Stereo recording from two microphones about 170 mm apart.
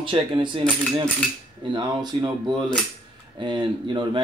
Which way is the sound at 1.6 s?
25° right (ahead or behind).